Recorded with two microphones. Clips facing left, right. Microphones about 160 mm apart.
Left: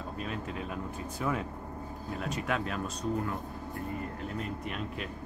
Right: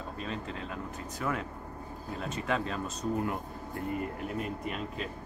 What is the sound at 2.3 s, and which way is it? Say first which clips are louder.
Speech: right 2 dB; 5° left (ahead or behind).